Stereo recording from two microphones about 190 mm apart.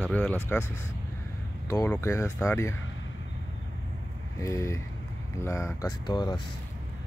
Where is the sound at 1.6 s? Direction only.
15° left (ahead or behind).